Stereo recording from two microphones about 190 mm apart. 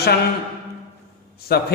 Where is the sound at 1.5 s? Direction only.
55° left (ahead or behind).